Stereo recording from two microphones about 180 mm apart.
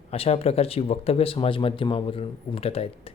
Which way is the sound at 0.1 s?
35° left (ahead or behind).